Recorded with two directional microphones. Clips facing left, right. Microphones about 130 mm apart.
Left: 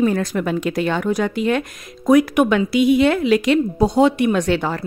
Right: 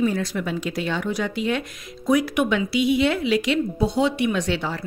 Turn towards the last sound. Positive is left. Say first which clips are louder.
# left 5 dB
turn(degrees=50)  # may be behind; listen again after turning